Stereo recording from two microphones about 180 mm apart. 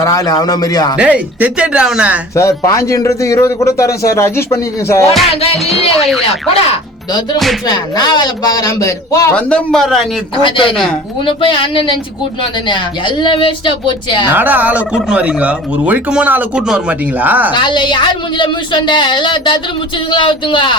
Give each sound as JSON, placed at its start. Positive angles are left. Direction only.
{"t": 0.0, "sound": "a woman's voice", "side_deg": 20}
{"t": 0.9, "sound": "speech", "side_deg": -5}
{"t": 2.3, "sound": "a man's voice", "side_deg": 15}
{"t": 6.5, "sound": "speech", "side_deg": 35}
{"t": 7.7, "sound": "a woman's voice", "side_deg": 25}
{"t": 9.3, "sound": "speech", "side_deg": 5}
{"t": 10.3, "sound": "a woman's voice", "side_deg": 30}
{"t": 14.3, "sound": "speech", "side_deg": -10}
{"t": 17.5, "sound": "a woman's voice", "side_deg": 25}